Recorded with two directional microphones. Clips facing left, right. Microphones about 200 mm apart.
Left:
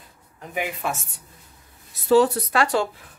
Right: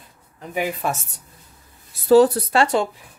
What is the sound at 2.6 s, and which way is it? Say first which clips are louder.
Speech: right 3 dB; 20° right (ahead or behind).